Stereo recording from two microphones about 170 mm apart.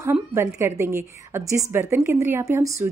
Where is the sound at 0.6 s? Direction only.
15° right (ahead or behind).